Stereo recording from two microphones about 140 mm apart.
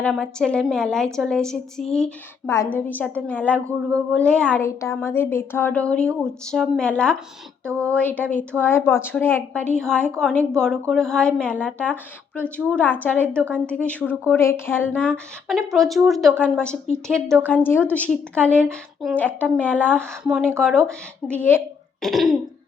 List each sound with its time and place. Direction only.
0.1 s speech: 5° left (ahead or behind)
2.5 s speech: 15° left (ahead or behind)
20.2 s speech: 5° right (ahead or behind); by 21.6 s 10° left (ahead or behind)
22.0 s speech: centre (ahead or behind)